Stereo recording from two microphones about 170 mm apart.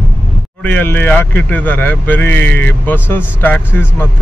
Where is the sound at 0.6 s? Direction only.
10° left (ahead or behind).